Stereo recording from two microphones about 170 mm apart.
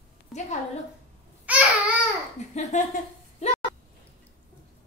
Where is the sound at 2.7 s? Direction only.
45° left (ahead or behind).